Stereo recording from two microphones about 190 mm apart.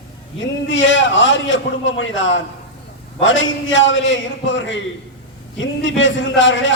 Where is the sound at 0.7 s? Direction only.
75° left (ahead or behind).